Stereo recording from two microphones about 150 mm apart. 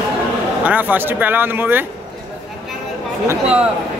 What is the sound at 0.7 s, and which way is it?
Speech, 10° right (ahead or behind).